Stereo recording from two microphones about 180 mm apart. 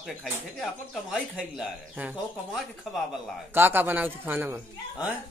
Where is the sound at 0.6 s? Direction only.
Centre (ahead or behind).